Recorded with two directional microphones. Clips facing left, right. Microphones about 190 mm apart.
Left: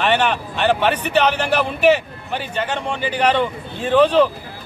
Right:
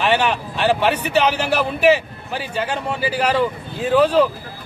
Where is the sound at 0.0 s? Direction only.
10° right (ahead or behind).